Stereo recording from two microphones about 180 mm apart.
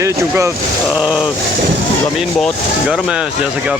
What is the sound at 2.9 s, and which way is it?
Speech, 5° right (ahead or behind).